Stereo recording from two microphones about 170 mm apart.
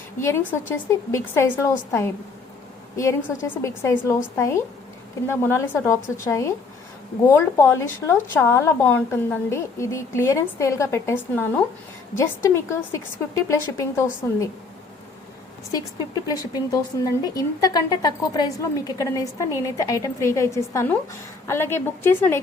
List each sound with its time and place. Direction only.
0.2 s a woman's voice: 15° left (ahead or behind)
16.2 s a woman's voice: 20° left (ahead or behind)